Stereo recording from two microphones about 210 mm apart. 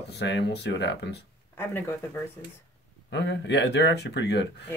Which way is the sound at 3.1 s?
55° left (ahead or behind).